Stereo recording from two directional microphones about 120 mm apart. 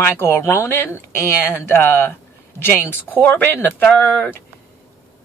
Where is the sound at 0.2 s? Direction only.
20° left (ahead or behind).